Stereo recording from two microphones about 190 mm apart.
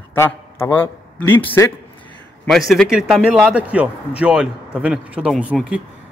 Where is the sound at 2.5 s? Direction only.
Centre (ahead or behind).